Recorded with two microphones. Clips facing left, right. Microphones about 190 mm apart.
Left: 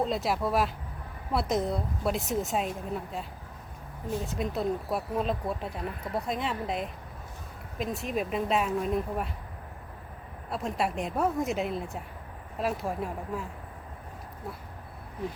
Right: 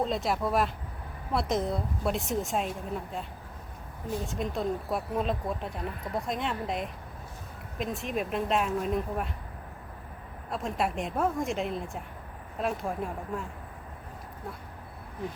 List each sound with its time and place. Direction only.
0.0 s speech: centre (ahead or behind)
10.5 s speech: centre (ahead or behind)